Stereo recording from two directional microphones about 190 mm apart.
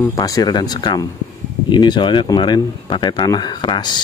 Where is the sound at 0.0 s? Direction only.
15° left (ahead or behind).